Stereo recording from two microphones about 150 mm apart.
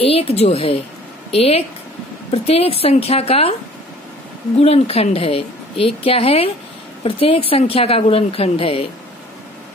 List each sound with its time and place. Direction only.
0.0 s a woman's voice: 40° left (ahead or behind)
4.6 s a woman's voice: 45° left (ahead or behind)